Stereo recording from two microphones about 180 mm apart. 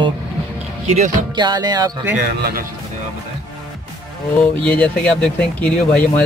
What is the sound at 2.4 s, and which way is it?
Speech, 60° right (ahead or behind).